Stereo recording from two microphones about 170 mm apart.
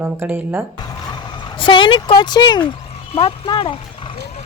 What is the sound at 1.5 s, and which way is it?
Speech, 30° left (ahead or behind).